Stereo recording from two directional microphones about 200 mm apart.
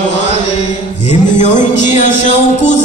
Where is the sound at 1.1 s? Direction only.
35° left (ahead or behind).